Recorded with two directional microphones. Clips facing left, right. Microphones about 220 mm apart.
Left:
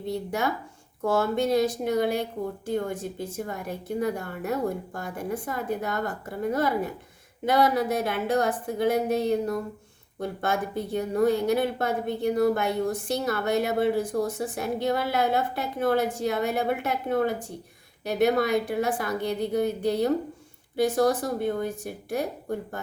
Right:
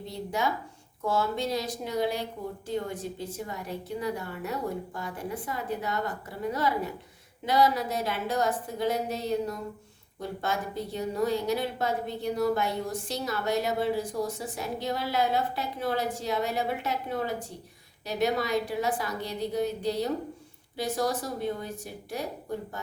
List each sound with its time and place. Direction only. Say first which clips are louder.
0.1 s a woman's voice: left 3 dB; 55° left (ahead or behind)